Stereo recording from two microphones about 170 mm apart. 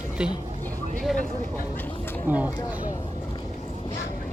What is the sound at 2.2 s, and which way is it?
Speech, 10° right (ahead or behind).